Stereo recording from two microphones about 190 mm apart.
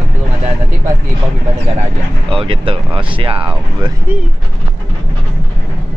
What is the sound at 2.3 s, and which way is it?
Speech, 30° right (ahead or behind).